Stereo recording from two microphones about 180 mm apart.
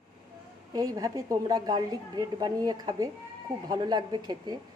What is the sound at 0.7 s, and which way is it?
Speech, 20° right (ahead or behind).